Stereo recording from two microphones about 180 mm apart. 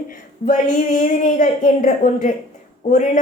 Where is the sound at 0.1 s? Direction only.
45° left (ahead or behind).